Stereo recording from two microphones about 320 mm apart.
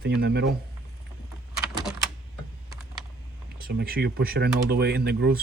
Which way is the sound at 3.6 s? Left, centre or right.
Right.